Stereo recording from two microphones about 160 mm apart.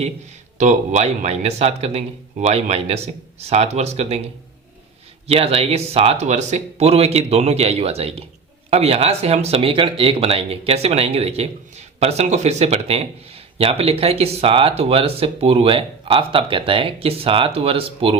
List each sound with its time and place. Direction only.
0.6 s speech: 50° right (ahead or behind)
5.3 s speech: 40° right (ahead or behind)